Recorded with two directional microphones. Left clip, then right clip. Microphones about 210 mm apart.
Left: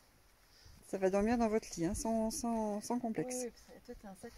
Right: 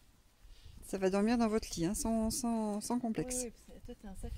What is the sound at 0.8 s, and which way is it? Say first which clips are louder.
Speech: even; 10° right (ahead or behind).